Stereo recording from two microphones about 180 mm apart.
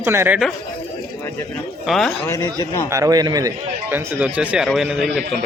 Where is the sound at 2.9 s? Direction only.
20° right (ahead or behind).